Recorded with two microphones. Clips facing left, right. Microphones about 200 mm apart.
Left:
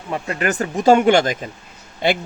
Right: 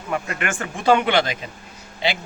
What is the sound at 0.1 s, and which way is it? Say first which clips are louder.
Speech: left 4 dB; 30° left (ahead or behind).